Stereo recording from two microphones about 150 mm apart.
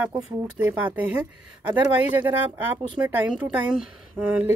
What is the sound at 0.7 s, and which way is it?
Speech, 10° right (ahead or behind).